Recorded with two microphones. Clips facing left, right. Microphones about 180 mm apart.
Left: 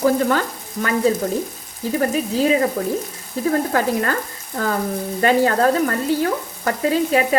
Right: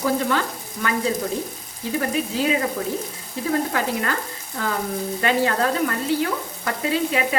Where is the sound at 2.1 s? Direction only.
40° left (ahead or behind).